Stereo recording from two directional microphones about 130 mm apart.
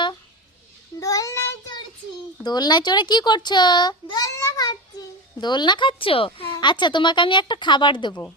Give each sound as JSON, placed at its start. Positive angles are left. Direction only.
{"t": 0.9, "sound": "child singing", "side_deg": 25}
{"t": 2.4, "sound": "a child's voice", "side_deg": 30}